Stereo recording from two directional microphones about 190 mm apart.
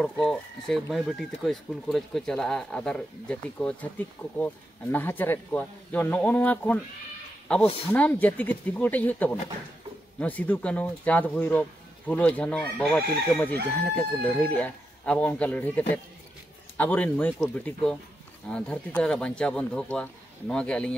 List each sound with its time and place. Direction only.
0.0 s speech: 5° left (ahead or behind)
7.6 s speech: 30° left (ahead or behind)
7.9 s speech: 10° left (ahead or behind)